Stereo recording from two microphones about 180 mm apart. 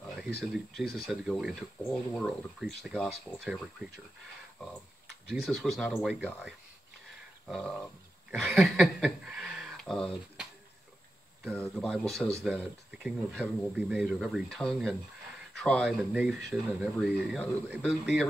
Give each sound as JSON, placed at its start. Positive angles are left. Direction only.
{"t": 0.4, "sound": "speech", "side_deg": 0}
{"t": 5.3, "sound": "speech", "side_deg": 0}
{"t": 11.5, "sound": "speech", "side_deg": 10}